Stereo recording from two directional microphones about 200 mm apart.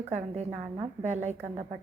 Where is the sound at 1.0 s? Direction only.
35° right (ahead or behind).